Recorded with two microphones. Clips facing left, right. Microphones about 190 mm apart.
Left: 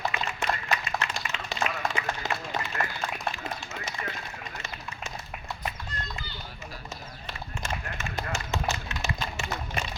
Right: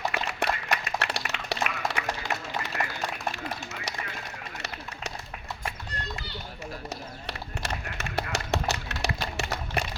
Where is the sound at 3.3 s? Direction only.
70° right (ahead or behind).